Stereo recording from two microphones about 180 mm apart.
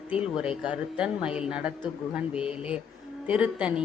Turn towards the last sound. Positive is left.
turn(degrees=-5)  # may be behind; listen again after turning